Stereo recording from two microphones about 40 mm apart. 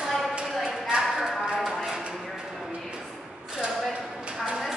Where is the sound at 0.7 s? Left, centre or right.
Centre.